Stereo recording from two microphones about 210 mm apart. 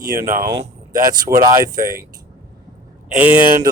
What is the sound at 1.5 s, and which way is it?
Speech, 15° right (ahead or behind).